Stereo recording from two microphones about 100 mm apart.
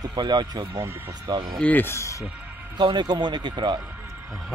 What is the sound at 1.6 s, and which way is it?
Speech, 15° left (ahead or behind).